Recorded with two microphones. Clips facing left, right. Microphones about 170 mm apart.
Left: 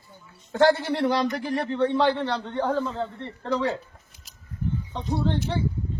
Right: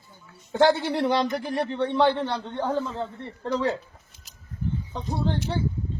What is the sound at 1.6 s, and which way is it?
Speech, 15° right (ahead or behind).